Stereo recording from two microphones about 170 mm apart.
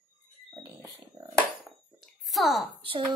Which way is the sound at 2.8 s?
30° right (ahead or behind).